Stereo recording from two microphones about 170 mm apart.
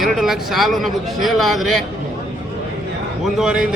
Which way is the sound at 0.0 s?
Centre (ahead or behind).